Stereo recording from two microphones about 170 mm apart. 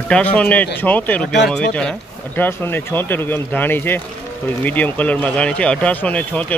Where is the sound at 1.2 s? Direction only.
85° left.